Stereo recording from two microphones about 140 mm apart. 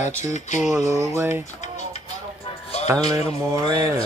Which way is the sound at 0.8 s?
20° right (ahead or behind).